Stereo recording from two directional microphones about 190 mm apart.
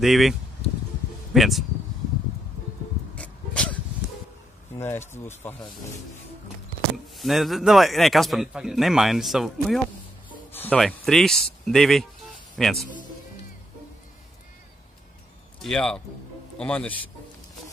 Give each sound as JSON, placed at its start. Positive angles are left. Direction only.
{"t": 0.0, "sound": "a man's voice", "side_deg": 0}
{"t": 3.2, "sound": "a sound", "side_deg": 5}
{"t": 4.7, "sound": "speech", "side_deg": 15}
{"t": 7.2, "sound": "a man's voice", "side_deg": 0}
{"t": 15.6, "sound": "a man's voice", "side_deg": 5}